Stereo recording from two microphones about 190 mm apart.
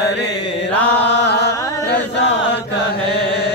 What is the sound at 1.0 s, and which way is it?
Chant, 65° left (ahead or behind).